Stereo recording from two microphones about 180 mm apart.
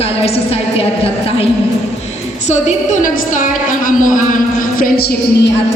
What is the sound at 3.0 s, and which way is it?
A woman's voice, 50° left (ahead or behind).